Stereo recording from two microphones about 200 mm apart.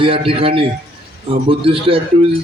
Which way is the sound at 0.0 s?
25° right (ahead or behind).